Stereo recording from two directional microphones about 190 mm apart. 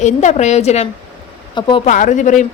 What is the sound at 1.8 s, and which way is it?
Speech, 40° left (ahead or behind).